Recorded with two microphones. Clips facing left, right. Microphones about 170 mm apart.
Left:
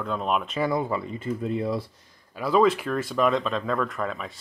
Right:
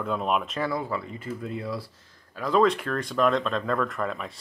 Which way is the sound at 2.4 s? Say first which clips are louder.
Left 1 dB; 5° left (ahead or behind).